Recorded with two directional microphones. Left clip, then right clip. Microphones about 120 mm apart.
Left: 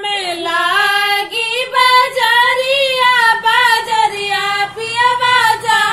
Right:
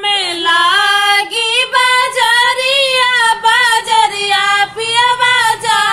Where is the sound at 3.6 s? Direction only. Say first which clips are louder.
Even; 30° right (ahead or behind).